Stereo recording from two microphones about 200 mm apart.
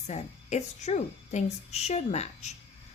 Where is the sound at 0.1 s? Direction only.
35° left (ahead or behind).